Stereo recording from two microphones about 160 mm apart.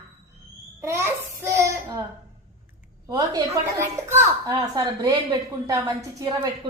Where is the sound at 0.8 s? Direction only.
15° right (ahead or behind).